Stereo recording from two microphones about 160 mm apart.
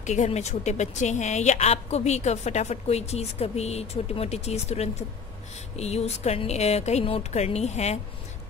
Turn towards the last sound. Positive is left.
turn(degrees=45)  # may be behind; listen again after turning